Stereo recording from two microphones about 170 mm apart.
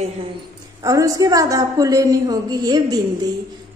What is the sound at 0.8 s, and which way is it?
A woman's voice, 20° right (ahead or behind).